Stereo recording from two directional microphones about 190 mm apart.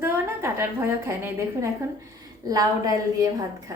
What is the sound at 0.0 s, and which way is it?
A woman's voice, 15° right (ahead or behind).